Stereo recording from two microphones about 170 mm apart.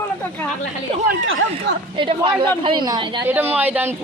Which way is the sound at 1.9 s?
30° right (ahead or behind).